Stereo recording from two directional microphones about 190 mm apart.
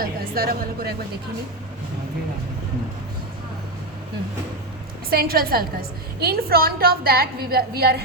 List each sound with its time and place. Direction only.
0.0 s speech: 50° right (ahead or behind)
5.1 s a woman's voice: 55° right (ahead or behind)